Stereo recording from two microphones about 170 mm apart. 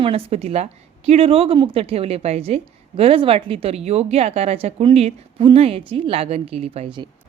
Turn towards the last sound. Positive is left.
turn(degrees=-30)  # may be behind; listen again after turning